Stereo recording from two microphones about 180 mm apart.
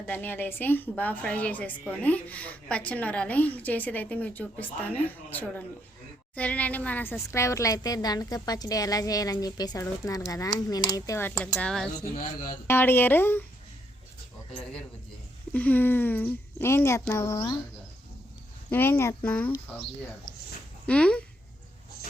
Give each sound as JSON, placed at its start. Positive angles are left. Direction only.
{"t": 0.1, "sound": "a woman's voice", "side_deg": 10}
{"t": 11.9, "sound": "speech", "side_deg": 30}
{"t": 12.6, "sound": "a woman's voice", "side_deg": 10}
{"t": 15.5, "sound": "a woman's voice", "side_deg": 10}
{"t": 18.7, "sound": "a woman's voice", "side_deg": 10}
{"t": 20.3, "sound": "a sound", "side_deg": 25}
{"t": 20.8, "sound": "a woman's voice", "side_deg": 5}